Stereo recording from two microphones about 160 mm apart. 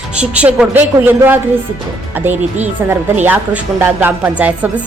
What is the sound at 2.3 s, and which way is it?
Speech, 45° right (ahead or behind).